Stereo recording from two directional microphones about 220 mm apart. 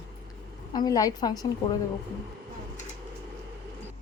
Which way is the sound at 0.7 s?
15° left (ahead or behind).